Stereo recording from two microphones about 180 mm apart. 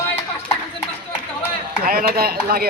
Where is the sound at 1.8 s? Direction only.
55° right (ahead or behind).